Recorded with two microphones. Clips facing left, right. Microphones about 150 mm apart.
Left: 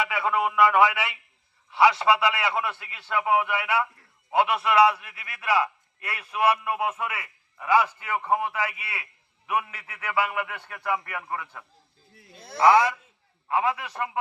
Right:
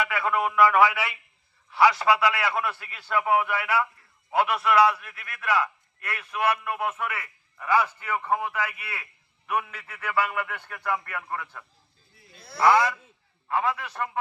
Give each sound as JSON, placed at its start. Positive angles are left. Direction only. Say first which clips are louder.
{"t": 0.0, "sound": "a man's voice", "louder": "even", "side_deg": 25}
{"t": 1.7, "sound": "a man's voice", "louder": "left 1 dB", "side_deg": 25}
{"t": 6.5, "sound": "a man's voice", "louder": "left 2 dB", "side_deg": 10}
{"t": 7.0, "sound": "a man's voice", "louder": "even", "side_deg": 25}
{"t": 7.5, "sound": "a man's voice", "louder": "left 2 dB", "side_deg": 10}